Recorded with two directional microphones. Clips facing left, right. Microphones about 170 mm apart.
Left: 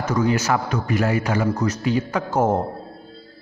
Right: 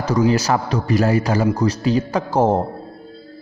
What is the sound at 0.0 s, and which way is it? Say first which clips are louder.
A man's voice: right 3 dB; 35° right (ahead or behind).